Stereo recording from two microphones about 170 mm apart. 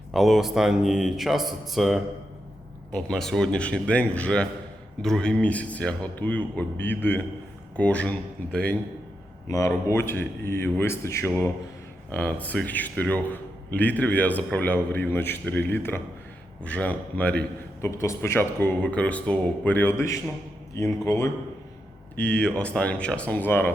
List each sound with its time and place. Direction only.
0.1 s a man's voice: centre (ahead or behind); by 21.2 s 15° left (ahead or behind)
22.1 s a man's voice: 5° left (ahead or behind)